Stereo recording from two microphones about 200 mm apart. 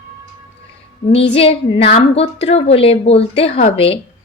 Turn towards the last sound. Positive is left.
turn(degrees=30)  # may be behind; listen again after turning